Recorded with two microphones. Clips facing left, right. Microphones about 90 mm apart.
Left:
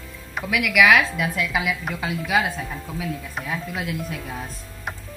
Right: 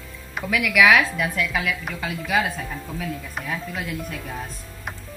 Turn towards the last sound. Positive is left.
turn(degrees=5)  # may be behind; listen again after turning